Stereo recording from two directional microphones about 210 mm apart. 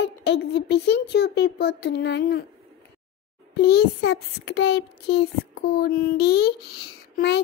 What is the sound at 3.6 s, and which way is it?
A child's voice, 50° left (ahead or behind).